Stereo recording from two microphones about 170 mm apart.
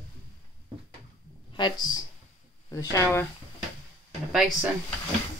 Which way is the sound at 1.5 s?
30° left (ahead or behind).